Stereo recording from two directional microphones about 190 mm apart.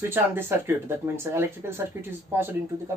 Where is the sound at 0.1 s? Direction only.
10° right (ahead or behind).